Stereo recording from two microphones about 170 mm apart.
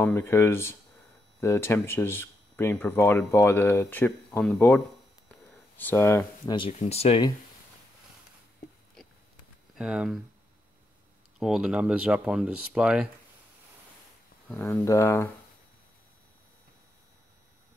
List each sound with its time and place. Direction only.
0.0 s speech: 15° left (ahead or behind)
6.8 s speech: 35° left (ahead or behind)
9.8 s speech: 5° right (ahead or behind)
11.3 s speech: 5° right (ahead or behind)
14.7 s speech: 15° left (ahead or behind)